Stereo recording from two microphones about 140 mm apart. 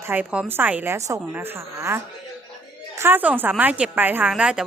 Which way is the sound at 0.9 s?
20° right (ahead or behind).